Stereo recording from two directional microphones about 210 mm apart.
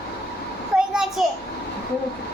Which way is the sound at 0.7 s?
5° right (ahead or behind).